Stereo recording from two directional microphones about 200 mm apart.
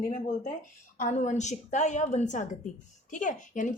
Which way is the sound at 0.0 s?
40° left (ahead or behind).